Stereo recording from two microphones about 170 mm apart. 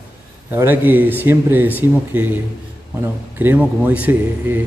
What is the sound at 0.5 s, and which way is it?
Speech, 10° right (ahead or behind).